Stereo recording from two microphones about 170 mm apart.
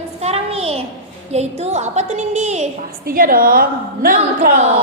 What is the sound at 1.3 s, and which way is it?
A woman's voice, 40° right (ahead or behind).